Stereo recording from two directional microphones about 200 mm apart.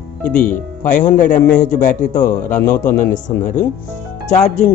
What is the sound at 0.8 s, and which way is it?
Speech, 40° left (ahead or behind).